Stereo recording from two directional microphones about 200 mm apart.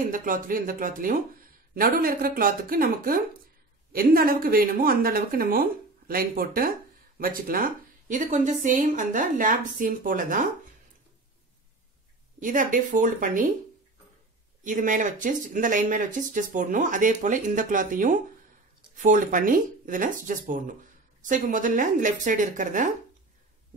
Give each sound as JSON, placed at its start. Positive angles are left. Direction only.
{"t": 0.1, "sound": "a woman's voice", "side_deg": -45}
{"t": 12.4, "sound": "speech", "side_deg": -40}
{"t": 14.6, "sound": "speech", "side_deg": -40}